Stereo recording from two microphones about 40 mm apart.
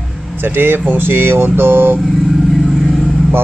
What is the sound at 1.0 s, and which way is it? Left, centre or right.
Speech, right.